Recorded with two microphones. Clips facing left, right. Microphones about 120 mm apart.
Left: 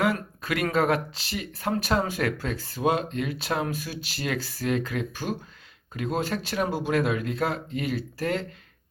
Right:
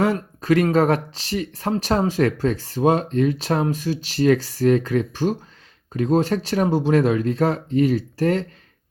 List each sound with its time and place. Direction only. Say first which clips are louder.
0.0 s speech: right 5 dB; 35° right (ahead or behind)